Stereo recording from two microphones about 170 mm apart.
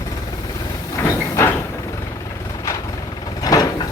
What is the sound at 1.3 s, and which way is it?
Vehicle, 15° left (ahead or behind).